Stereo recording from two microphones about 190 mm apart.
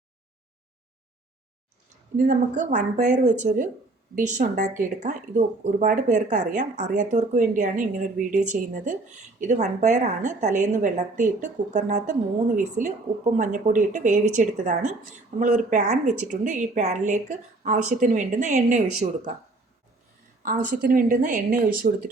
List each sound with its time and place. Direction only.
2.1 s speech: 40° right (ahead or behind)
20.4 s a woman's voice: 45° right (ahead or behind)